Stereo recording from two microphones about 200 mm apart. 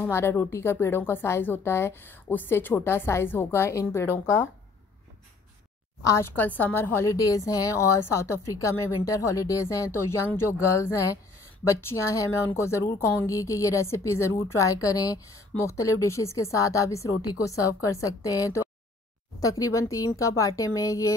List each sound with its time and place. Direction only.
0.0 s a woman's voice: 10° left (ahead or behind)
6.0 s a woman's voice: 15° left (ahead or behind)